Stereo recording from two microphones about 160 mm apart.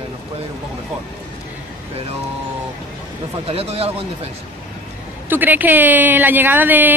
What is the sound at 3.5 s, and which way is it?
Speech, 40° right (ahead or behind).